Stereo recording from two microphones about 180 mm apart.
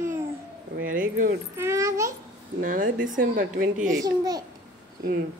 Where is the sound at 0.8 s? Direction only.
50° right (ahead or behind).